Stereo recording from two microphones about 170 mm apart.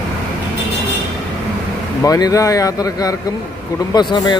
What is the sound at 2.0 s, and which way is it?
Speech, 20° left (ahead or behind).